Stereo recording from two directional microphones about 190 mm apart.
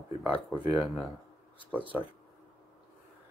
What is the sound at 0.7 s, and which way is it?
Speech, centre (ahead or behind).